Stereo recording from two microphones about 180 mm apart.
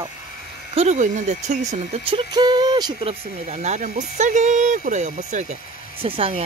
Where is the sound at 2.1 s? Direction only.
25° right (ahead or behind); by 5.6 s 40° right (ahead or behind).